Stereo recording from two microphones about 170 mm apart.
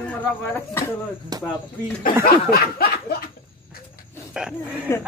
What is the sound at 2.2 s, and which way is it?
Snicker, 60° left (ahead or behind).